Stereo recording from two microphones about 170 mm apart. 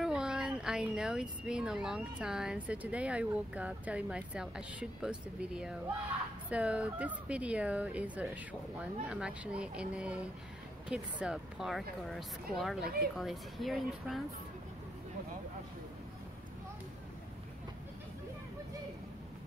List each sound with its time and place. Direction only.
0.0 s speech: 5° right (ahead or behind)